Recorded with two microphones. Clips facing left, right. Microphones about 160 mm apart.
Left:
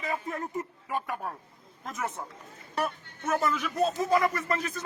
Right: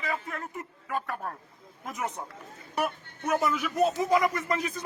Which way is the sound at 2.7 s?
10° right (ahead or behind).